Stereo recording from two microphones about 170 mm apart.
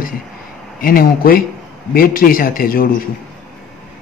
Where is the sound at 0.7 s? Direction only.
55° left (ahead or behind).